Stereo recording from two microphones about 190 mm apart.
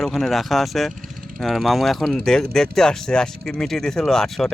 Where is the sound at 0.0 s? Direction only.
Centre (ahead or behind).